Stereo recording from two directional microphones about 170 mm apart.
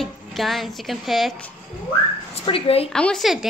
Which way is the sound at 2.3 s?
35° left (ahead or behind).